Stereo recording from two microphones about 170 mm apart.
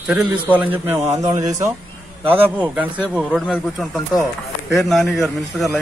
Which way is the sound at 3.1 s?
Centre (ahead or behind).